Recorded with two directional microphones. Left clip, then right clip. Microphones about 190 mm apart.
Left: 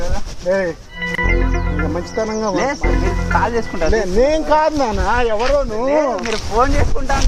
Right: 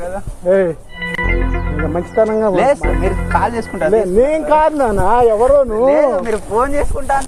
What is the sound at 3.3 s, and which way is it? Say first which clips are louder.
Speech: right 1 dB; 45° right (ahead or behind).